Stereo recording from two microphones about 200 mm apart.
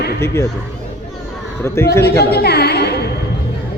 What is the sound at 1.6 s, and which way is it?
Speech, 15° left (ahead or behind).